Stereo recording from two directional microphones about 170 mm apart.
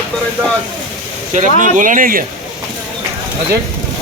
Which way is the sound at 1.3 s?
45° right (ahead or behind).